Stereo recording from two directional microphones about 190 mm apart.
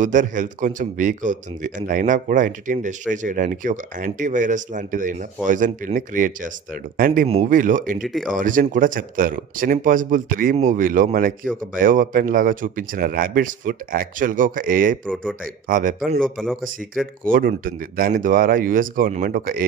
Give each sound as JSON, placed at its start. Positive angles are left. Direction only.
{"t": 0.0, "sound": "speech", "side_deg": -40}
{"t": 8.0, "sound": "speech", "side_deg": 0}
{"t": 8.4, "sound": "speech", "side_deg": -45}
{"t": 15.0, "sound": "speech", "side_deg": 5}
{"t": 15.7, "sound": "speech", "side_deg": -45}
{"t": 16.2, "sound": "speech", "side_deg": 0}
{"t": 17.3, "sound": "speech", "side_deg": -45}